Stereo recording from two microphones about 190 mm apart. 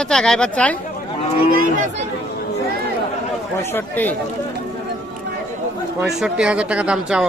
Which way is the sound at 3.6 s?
10° left (ahead or behind).